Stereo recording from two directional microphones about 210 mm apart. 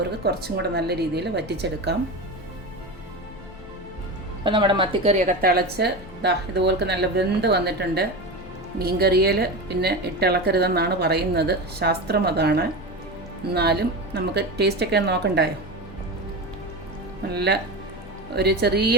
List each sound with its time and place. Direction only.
0.3 s a woman's voice: 50° right (ahead or behind)
4.4 s a woman's voice: 25° right (ahead or behind); by 15.4 s 50° right (ahead or behind)
17.3 s a woman's voice: 50° right (ahead or behind)